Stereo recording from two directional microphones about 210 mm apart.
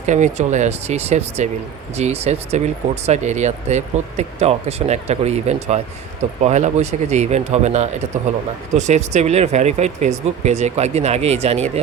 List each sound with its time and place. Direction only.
0.0 s speech: 35° right (ahead or behind)